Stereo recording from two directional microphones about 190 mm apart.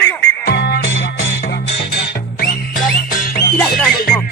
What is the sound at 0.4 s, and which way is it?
Music, 60° left (ahead or behind).